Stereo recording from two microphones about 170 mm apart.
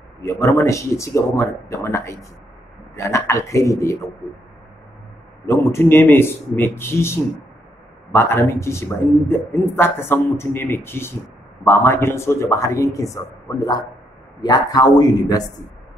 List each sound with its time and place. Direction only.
0.2 s a man's voice: 15° left (ahead or behind)
5.5 s a man's voice: 15° left (ahead or behind)